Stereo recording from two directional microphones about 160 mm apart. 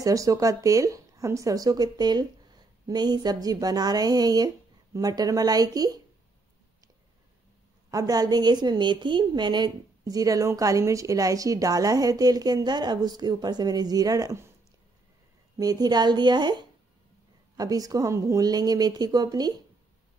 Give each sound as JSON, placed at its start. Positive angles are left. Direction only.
{"t": 0.0, "sound": "a woman's voice", "side_deg": -20}
{"t": 7.9, "sound": "a woman's voice", "side_deg": -20}
{"t": 15.5, "sound": "a woman's voice", "side_deg": -25}